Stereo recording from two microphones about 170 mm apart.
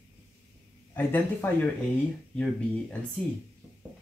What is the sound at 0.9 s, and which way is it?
Speech, 10° left (ahead or behind).